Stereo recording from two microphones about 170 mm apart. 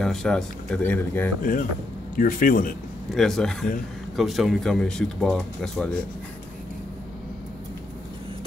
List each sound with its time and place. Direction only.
0.0 s speech: 5° left (ahead or behind)
1.4 s a man's voice: 55° left (ahead or behind)
3.1 s speech: centre (ahead or behind)